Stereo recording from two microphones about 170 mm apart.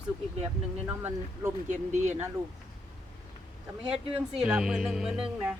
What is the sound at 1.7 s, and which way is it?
Speech, 45° right (ahead or behind).